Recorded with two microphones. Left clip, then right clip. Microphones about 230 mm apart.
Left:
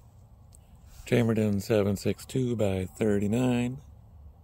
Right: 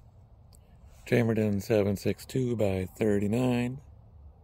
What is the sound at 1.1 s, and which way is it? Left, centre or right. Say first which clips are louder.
Speech: even; centre.